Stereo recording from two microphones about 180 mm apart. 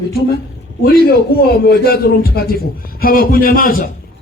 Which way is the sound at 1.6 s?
60° left (ahead or behind).